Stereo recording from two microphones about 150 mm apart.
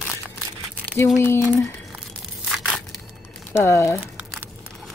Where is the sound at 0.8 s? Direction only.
15° left (ahead or behind).